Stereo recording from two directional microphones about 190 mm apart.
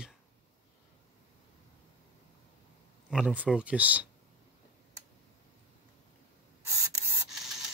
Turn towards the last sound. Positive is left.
turn(degrees=-15)  # may be behind; listen again after turning